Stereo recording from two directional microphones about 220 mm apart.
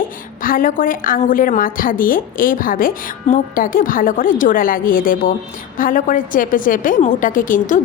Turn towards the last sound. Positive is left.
turn(degrees=35)  # may be behind; listen again after turning